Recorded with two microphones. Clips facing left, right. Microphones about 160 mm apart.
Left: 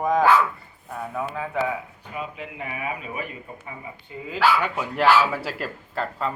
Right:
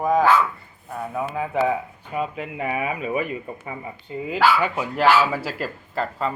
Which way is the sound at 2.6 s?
70° right (ahead or behind).